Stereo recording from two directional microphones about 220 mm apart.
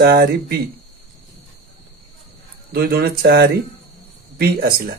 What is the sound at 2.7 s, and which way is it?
Speech, 45° right (ahead or behind).